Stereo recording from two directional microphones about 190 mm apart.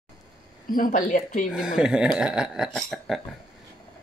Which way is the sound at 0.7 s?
45° left (ahead or behind).